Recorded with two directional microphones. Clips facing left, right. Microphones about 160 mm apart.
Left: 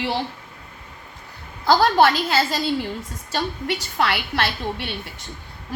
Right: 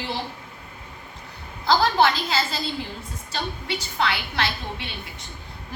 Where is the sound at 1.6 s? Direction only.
50° left (ahead or behind).